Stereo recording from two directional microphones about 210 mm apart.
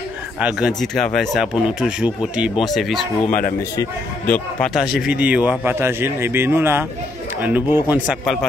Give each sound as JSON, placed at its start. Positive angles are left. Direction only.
{"t": 0.4, "sound": "speech", "side_deg": -5}
{"t": 3.3, "sound": "speech", "side_deg": 40}
{"t": 4.3, "sound": "a man's voice", "side_deg": 0}